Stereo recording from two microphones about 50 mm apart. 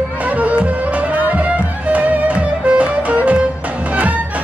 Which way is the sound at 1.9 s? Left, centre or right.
Right.